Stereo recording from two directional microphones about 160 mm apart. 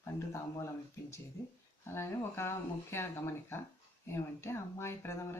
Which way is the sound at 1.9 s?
15° left (ahead or behind).